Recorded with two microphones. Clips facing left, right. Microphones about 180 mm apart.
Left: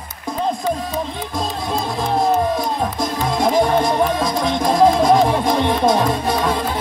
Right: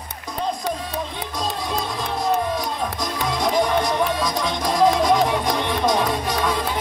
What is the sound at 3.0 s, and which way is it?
Music, 50° left (ahead or behind).